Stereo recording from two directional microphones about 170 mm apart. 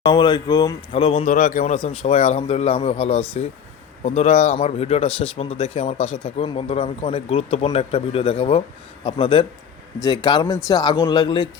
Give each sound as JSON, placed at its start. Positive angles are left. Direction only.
{"t": 0.0, "sound": "speech", "side_deg": 25}
{"t": 1.2, "sound": "speech", "side_deg": 45}